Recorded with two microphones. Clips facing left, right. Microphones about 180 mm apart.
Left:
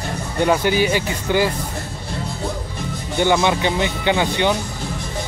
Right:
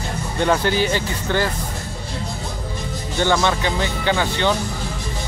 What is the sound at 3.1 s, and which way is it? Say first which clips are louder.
Speech: left 2 dB; 15° left (ahead or behind).